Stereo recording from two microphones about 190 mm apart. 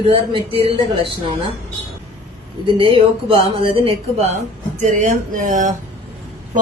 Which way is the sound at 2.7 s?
30° right (ahead or behind).